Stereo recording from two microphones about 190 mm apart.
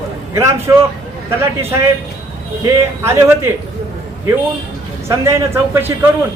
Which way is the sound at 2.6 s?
15° right (ahead or behind).